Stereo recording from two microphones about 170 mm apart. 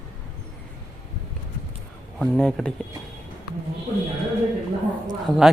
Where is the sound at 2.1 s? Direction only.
5° left (ahead or behind).